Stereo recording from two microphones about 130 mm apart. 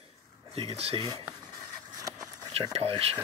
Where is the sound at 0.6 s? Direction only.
50° right (ahead or behind).